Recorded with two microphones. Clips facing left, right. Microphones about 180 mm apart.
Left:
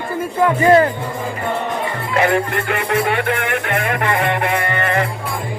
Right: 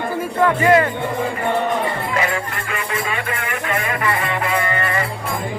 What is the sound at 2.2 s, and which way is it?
Music, 65° left (ahead or behind).